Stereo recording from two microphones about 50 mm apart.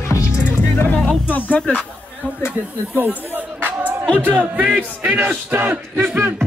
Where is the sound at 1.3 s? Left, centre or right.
Left.